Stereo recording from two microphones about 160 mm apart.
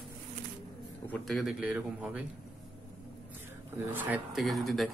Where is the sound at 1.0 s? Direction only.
5° left (ahead or behind).